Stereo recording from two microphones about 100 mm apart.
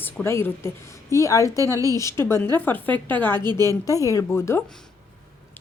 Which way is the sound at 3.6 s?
30° left (ahead or behind).